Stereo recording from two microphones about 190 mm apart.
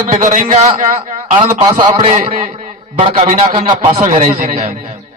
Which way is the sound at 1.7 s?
20° right (ahead or behind).